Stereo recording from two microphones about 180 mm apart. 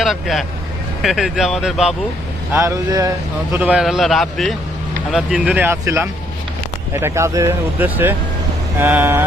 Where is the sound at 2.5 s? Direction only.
15° right (ahead or behind).